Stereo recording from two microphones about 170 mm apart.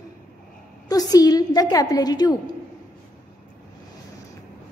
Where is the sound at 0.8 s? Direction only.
20° left (ahead or behind).